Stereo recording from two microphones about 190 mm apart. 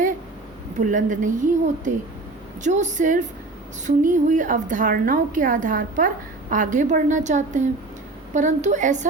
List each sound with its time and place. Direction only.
0.8 s a woman's voice: 40° right (ahead or behind)